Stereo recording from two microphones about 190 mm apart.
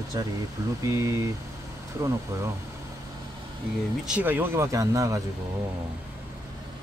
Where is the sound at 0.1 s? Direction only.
20° right (ahead or behind).